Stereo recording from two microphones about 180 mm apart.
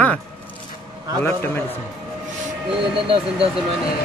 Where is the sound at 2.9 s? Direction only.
30° right (ahead or behind).